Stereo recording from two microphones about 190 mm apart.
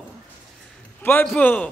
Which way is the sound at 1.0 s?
5° left (ahead or behind).